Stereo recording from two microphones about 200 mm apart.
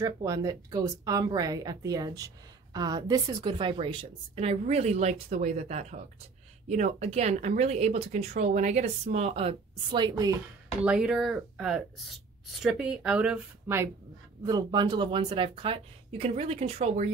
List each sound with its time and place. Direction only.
0.0 s a woman's voice: 15° right (ahead or behind)
10.8 s speech: 5° right (ahead or behind)
14.4 s a woman's voice: 20° right (ahead or behind)